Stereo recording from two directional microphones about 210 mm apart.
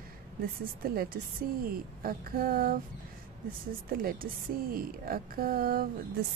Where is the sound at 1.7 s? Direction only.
45° right (ahead or behind).